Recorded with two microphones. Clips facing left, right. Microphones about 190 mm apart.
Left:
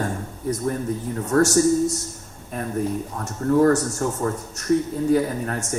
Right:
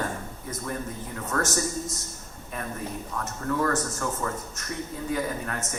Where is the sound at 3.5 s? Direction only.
40° left (ahead or behind).